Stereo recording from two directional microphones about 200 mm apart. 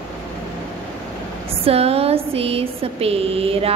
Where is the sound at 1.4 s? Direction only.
30° right (ahead or behind).